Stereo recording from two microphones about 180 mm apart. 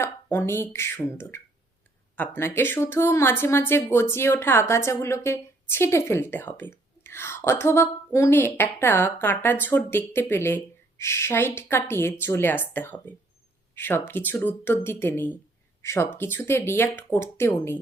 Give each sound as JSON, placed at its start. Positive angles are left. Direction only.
{"t": 0.0, "sound": "a woman's voice", "side_deg": 15}